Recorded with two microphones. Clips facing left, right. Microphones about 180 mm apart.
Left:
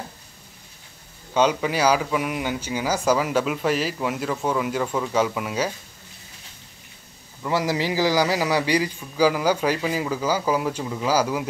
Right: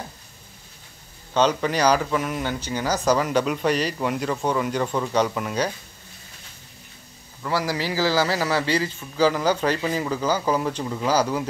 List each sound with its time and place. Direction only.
1.3 s speech: 10° left (ahead or behind)
7.4 s speech: 20° left (ahead or behind)